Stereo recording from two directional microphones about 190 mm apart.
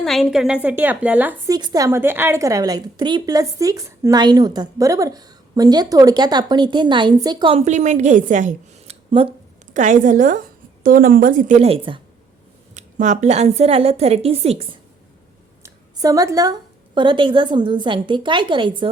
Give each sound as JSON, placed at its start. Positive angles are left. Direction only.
{"t": 0.0, "sound": "a woman's voice", "side_deg": 0}
{"t": 1.5, "sound": "a woman's voice", "side_deg": -20}
{"t": 9.0, "sound": "speech", "side_deg": -30}
{"t": 9.7, "sound": "a woman's voice", "side_deg": -40}
{"t": 12.7, "sound": "a woman's voice", "side_deg": -40}
{"t": 15.6, "sound": "a woman's voice", "side_deg": -20}